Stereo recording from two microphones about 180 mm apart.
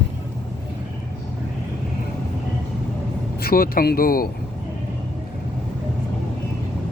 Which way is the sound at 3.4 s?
55° left (ahead or behind).